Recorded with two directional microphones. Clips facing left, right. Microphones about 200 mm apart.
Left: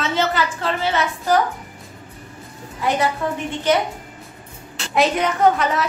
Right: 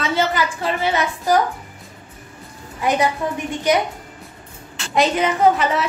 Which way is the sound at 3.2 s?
15° right (ahead or behind).